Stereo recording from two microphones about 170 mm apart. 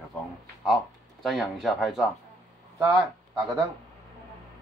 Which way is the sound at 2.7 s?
15° right (ahead or behind).